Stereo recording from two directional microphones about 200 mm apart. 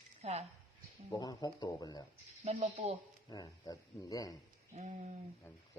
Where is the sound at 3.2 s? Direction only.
20° left (ahead or behind).